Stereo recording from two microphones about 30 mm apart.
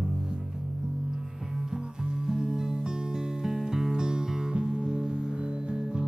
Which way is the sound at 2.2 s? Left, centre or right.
Right.